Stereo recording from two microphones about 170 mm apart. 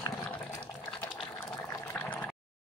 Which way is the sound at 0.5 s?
15° left (ahead or behind).